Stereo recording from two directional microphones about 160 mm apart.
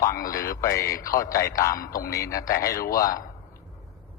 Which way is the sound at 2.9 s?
20° left (ahead or behind).